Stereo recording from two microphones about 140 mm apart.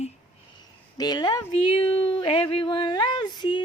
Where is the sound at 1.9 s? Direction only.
40° left (ahead or behind).